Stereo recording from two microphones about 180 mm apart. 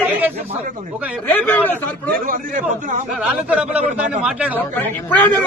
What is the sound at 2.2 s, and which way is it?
Speech, 50° right (ahead or behind).